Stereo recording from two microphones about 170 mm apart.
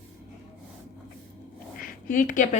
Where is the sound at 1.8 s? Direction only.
55° left (ahead or behind).